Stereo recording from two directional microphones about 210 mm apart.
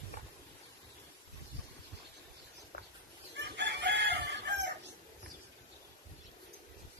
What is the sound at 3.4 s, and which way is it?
Chicken, 55° right (ahead or behind).